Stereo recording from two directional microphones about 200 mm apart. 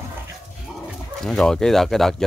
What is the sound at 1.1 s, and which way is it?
Speech, centre (ahead or behind).